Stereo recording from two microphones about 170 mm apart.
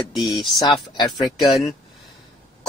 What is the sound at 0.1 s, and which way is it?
Speech, centre (ahead or behind).